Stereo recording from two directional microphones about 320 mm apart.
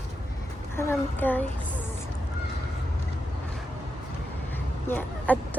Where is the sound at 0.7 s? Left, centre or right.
Centre.